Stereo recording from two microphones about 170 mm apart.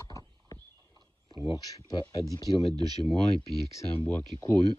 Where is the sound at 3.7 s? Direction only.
15° left (ahead or behind).